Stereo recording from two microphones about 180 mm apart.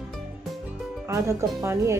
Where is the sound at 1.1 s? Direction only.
15° right (ahead or behind).